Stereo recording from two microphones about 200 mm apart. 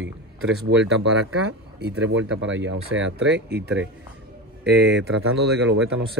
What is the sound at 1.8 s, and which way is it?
Speech, 65° right (ahead or behind).